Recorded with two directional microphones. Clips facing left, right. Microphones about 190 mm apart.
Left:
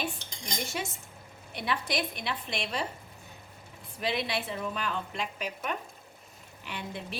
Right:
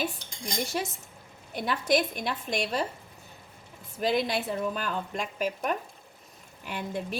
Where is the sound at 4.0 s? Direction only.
45° right (ahead or behind).